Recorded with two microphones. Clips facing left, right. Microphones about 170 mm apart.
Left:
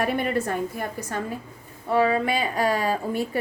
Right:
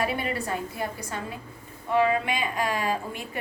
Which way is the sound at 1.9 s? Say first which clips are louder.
Left 2 dB; 35° left (ahead or behind).